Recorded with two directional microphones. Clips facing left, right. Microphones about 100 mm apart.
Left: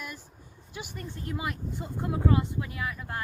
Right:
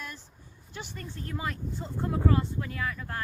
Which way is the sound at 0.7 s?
10° left (ahead or behind).